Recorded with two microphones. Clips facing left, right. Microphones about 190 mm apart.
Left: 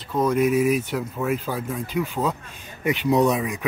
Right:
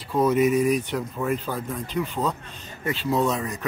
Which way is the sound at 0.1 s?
5° right (ahead or behind).